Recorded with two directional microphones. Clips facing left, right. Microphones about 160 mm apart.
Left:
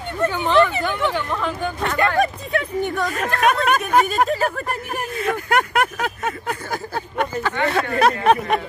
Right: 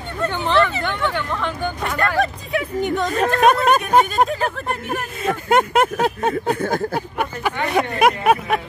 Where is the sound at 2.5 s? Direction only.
15° right (ahead or behind).